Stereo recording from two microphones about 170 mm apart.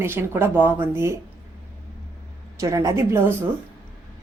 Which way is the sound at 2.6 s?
20° right (ahead or behind).